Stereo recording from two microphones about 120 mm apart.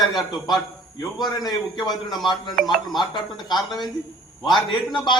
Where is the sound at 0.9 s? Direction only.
35° left (ahead or behind).